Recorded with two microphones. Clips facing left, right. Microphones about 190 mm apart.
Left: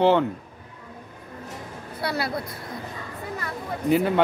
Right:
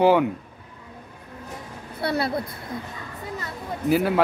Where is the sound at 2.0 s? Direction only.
25° right (ahead or behind).